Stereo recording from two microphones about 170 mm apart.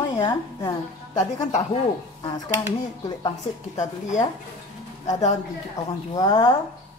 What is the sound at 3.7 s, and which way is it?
Speech, 45° left (ahead or behind).